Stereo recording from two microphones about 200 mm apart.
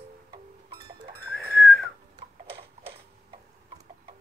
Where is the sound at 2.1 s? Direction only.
30° right (ahead or behind).